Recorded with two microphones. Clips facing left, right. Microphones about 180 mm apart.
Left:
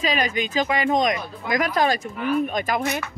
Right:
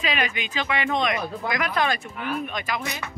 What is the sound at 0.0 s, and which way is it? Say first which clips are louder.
Speech: left 4 dB; 40° left (ahead or behind).